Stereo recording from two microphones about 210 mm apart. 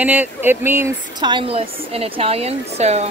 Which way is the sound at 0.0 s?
10° right (ahead or behind).